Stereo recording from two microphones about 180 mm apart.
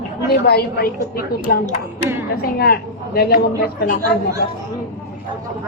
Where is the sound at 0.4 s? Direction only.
60° left (ahead or behind).